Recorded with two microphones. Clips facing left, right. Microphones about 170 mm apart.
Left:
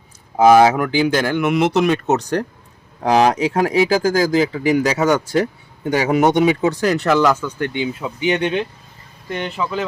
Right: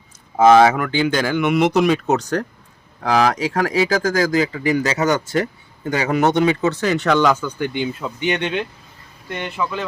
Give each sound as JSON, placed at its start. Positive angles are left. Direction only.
{"t": 0.3, "sound": "speech", "side_deg": 10}
{"t": 3.0, "sound": "speech", "side_deg": 30}
{"t": 6.9, "sound": "speech", "side_deg": 5}